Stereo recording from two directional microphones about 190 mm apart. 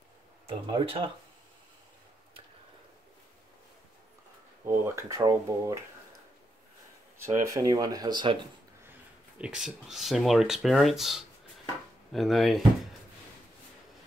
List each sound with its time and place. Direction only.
0.5 s speech: 25° right (ahead or behind)
4.6 s speech: 15° right (ahead or behind)
7.2 s speech: 15° right (ahead or behind)
9.4 s speech: 5° right (ahead or behind)